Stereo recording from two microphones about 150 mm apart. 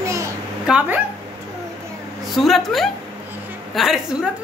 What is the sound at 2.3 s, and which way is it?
A woman's voice, centre (ahead or behind).